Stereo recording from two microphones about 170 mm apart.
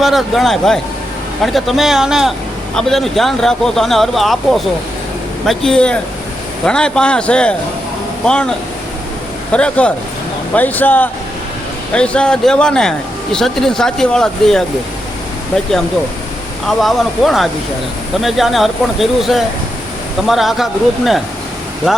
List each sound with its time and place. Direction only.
0.0 s speech: centre (ahead or behind)
16.6 s speech: centre (ahead or behind)